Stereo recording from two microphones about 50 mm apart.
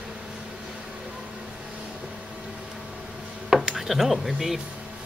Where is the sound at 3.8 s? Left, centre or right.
Centre.